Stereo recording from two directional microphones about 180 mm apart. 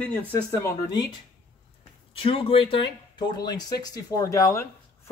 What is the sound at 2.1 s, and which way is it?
Speech, 30° left (ahead or behind).